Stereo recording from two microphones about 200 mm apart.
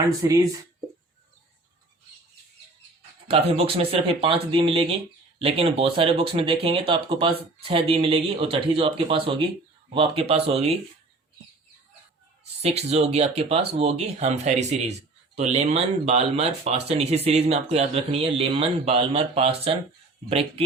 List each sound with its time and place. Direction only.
0.2 s speech: 15° right (ahead or behind)
3.2 s speech: 30° right (ahead or behind)
12.6 s speech: 30° right (ahead or behind)